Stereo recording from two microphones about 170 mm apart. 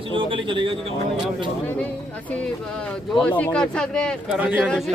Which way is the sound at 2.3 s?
5° left (ahead or behind).